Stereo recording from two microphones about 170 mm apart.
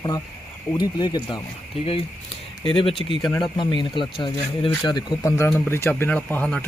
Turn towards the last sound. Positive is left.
turn(degrees=5)  # may be behind; listen again after turning